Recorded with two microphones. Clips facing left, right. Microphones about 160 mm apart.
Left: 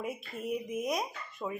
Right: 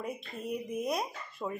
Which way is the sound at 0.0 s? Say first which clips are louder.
Left 1 dB; 5° left (ahead or behind).